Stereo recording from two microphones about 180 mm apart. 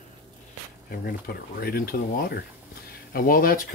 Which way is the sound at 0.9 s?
55° left (ahead or behind).